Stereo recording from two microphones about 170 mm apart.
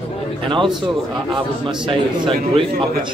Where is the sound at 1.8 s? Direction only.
30° right (ahead or behind).